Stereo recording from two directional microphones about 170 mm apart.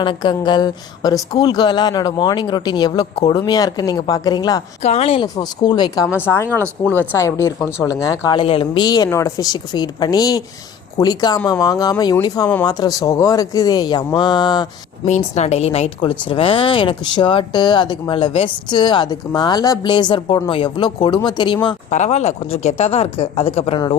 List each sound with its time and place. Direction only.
0.0 s speech: 25° left (ahead or behind)
4.8 s speech: 35° left (ahead or behind); by 8.4 s 20° left (ahead or behind)
8.4 s speech: 30° left (ahead or behind)
15.0 s speech: 40° left (ahead or behind)
21.8 s speech: 45° left (ahead or behind)